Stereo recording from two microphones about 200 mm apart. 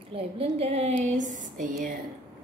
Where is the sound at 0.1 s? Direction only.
30° right (ahead or behind).